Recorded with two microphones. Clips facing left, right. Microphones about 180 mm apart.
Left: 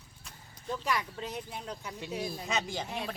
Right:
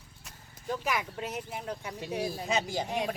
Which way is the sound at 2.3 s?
35° right (ahead or behind).